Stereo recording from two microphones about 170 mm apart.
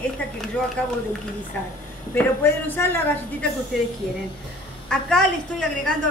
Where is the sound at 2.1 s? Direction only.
15° left (ahead or behind).